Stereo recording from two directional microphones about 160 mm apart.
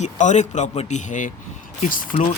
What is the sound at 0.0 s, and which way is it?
A man's voice, 50° left (ahead or behind).